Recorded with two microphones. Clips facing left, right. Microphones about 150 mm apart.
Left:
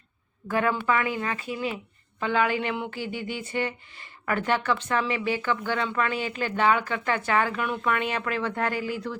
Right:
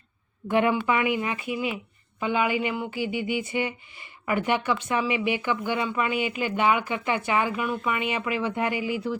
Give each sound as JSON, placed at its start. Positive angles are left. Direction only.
{"t": 0.4, "sound": "speech", "side_deg": -20}